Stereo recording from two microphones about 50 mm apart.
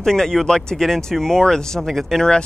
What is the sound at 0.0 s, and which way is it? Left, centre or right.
Speech, centre.